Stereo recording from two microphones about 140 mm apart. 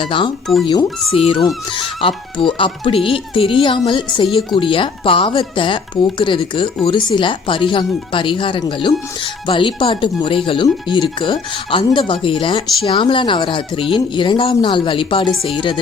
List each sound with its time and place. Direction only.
0.0 s speech: 35° left (ahead or behind)
0.4 s speech: centre (ahead or behind)
0.7 s speech: 40° left (ahead or behind)